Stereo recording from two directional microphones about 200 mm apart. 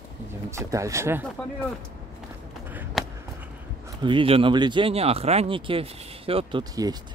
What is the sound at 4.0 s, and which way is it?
Speech, 25° right (ahead or behind).